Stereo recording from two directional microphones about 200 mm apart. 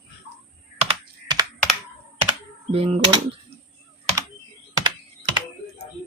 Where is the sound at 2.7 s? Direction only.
30° right (ahead or behind).